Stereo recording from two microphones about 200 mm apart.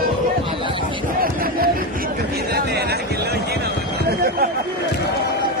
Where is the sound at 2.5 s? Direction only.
55° right (ahead or behind).